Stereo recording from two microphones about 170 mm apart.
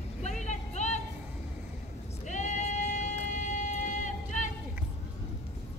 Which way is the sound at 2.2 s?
45° left (ahead or behind).